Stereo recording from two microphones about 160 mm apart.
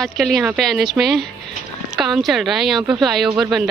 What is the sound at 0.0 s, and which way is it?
Speech, centre (ahead or behind).